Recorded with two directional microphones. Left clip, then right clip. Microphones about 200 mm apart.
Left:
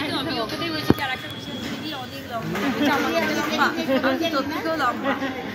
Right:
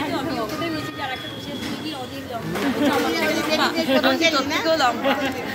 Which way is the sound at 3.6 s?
20° right (ahead or behind).